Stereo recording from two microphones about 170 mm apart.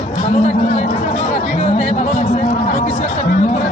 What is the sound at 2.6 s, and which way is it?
Chatter, 50° left (ahead or behind).